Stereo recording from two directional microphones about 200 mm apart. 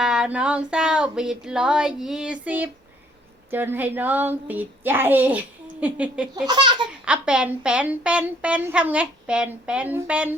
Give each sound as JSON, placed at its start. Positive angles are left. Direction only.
{"t": 0.0, "sound": "a woman's voice", "side_deg": -5}
{"t": 6.3, "sound": "a child's voice", "side_deg": -20}
{"t": 7.0, "sound": "a woman's voice", "side_deg": -5}